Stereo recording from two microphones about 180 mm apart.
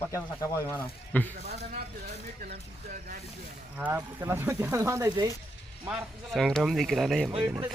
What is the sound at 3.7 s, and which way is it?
Speech, 10° right (ahead or behind).